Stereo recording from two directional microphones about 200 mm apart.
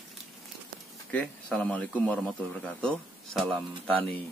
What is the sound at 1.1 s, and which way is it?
A man's voice, 5° left (ahead or behind).